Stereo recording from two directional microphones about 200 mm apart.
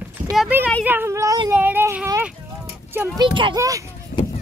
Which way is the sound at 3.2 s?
25° right (ahead or behind).